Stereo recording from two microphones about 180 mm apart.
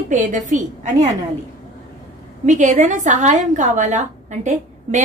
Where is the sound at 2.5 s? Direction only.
45° right (ahead or behind).